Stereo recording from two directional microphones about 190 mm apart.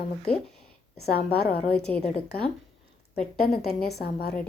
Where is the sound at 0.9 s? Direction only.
55° left (ahead or behind).